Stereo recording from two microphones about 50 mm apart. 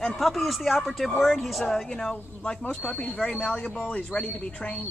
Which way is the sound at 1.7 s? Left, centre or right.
Centre.